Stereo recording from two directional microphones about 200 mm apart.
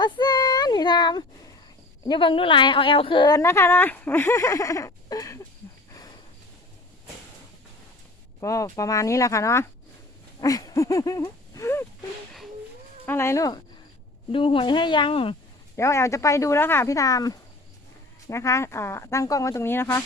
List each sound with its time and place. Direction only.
0.0 s child singing: 20° left (ahead or behind)
2.0 s a woman's voice: 25° left (ahead or behind)
8.4 s a woman's voice: 15° left (ahead or behind)
10.4 s a sound: 20° left (ahead or behind)
13.1 s a woman's voice: 15° left (ahead or behind)
15.7 s a woman's voice: 15° left (ahead or behind)